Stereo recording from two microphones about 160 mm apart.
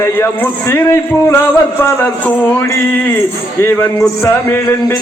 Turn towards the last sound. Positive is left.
turn(degrees=15)  # may be behind; listen again after turning